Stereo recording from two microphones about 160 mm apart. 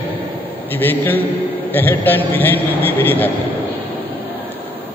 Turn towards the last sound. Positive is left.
turn(degrees=10)  # may be behind; listen again after turning